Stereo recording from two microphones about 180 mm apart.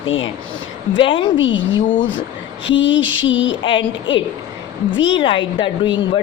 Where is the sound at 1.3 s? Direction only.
90° left.